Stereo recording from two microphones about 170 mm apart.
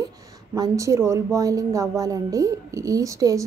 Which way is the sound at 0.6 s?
20° right (ahead or behind).